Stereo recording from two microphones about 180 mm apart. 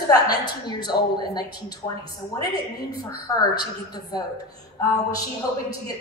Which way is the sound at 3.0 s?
20° left (ahead or behind).